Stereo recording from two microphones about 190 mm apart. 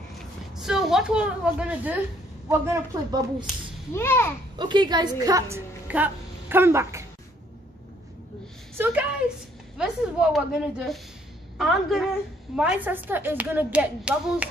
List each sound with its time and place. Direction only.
0.6 s a woman's voice: centre (ahead or behind); by 3.4 s 20° right (ahead or behind)
3.9 s a child's voice: 10° left (ahead or behind)
4.6 s a woman's voice: 25° right (ahead or behind)
8.7 s a woman's voice: 10° right (ahead or behind)